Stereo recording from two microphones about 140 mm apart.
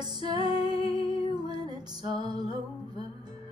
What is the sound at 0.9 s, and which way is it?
Music, 40° left (ahead or behind).